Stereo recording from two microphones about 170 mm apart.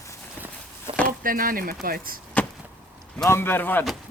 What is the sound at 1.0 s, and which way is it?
Speech, 55° right (ahead or behind).